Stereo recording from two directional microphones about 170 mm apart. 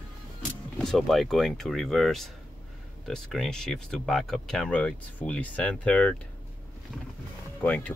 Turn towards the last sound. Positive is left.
turn(degrees=10)  # may be behind; listen again after turning